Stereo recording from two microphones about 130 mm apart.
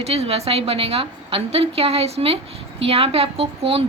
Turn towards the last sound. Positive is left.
turn(degrees=-50)  # may be behind; listen again after turning